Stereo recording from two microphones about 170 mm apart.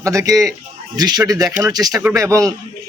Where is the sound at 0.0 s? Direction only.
20° right (ahead or behind).